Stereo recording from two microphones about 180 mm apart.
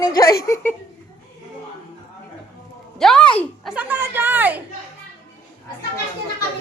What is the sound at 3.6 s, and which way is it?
Speech, 10° right (ahead or behind).